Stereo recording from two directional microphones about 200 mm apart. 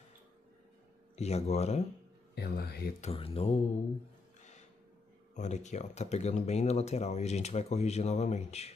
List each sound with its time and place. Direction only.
1.1 s speech: 35° left (ahead or behind)
2.3 s speech: 50° left (ahead or behind)
3.0 s speech: 30° left (ahead or behind)
4.4 s a sound: 35° left (ahead or behind)
5.3 s speech: 35° left (ahead or behind)